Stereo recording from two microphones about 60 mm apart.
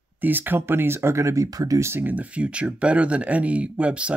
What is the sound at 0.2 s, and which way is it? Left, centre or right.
Speech, right.